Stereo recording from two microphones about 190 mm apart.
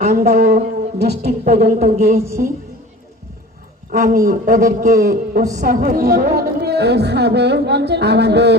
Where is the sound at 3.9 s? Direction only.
45° right (ahead or behind).